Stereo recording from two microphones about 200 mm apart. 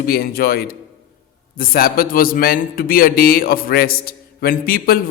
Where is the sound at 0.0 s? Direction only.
50° left (ahead or behind).